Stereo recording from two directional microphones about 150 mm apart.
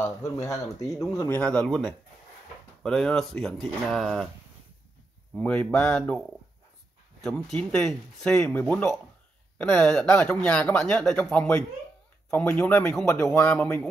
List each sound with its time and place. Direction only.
0.0 s speech: 20° left (ahead or behind)
1.3 s speech: 5° left (ahead or behind)
5.3 s speech: 5° left (ahead or behind)